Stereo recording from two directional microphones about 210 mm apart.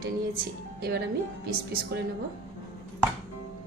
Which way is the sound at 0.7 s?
50° right (ahead or behind).